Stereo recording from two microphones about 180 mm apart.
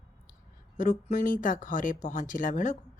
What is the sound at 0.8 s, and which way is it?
Speech, 45° left (ahead or behind).